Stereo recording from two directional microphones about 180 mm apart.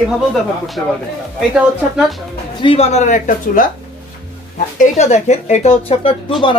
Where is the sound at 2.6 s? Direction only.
35° left (ahead or behind).